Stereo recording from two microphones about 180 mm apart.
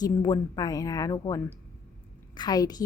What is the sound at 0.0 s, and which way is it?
A woman's voice, 20° left (ahead or behind).